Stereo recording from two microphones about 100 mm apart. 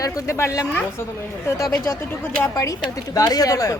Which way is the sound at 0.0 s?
35° left (ahead or behind).